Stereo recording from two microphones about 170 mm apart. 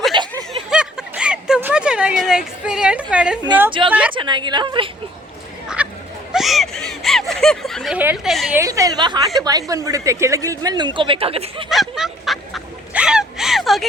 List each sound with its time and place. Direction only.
0.1 s snicker: 25° right (ahead or behind)
0.7 s a sound: 5° right (ahead or behind)
3.1 s a woman's voice: 5° right (ahead or behind)
3.7 s speech: 30° right (ahead or behind)
5.6 s a sound: 5° right (ahead or behind)
7.9 s a woman's voice: 5° right (ahead or behind)
8.5 s speech: 20° right (ahead or behind); by 11.6 s 35° right (ahead or behind)
11.7 s honk: centre (ahead or behind)